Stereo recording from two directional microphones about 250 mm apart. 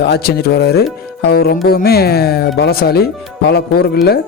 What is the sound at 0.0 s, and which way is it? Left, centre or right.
Speech, left.